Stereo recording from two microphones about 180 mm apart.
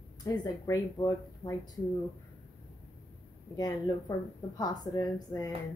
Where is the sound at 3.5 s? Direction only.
20° left (ahead or behind).